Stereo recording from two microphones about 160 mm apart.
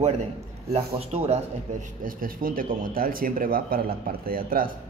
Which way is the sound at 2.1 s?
60° right (ahead or behind).